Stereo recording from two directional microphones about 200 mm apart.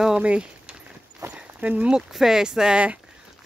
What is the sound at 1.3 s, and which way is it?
Speech, 5° right (ahead or behind).